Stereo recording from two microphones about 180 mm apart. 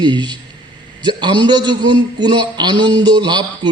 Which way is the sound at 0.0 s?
25° right (ahead or behind).